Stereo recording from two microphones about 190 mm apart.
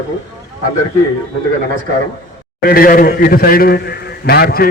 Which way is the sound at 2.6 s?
50° left (ahead or behind).